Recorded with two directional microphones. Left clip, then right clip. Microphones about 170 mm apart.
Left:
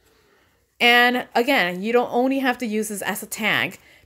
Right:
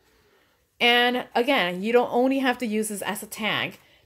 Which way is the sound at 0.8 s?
25° left (ahead or behind).